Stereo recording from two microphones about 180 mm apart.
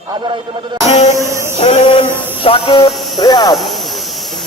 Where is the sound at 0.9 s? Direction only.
40° left (ahead or behind).